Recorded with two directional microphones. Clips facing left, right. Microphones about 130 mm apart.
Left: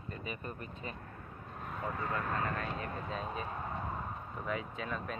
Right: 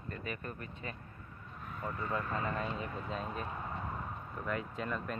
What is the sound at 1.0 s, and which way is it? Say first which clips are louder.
Vehicle: left 4 dB; 55° left (ahead or behind).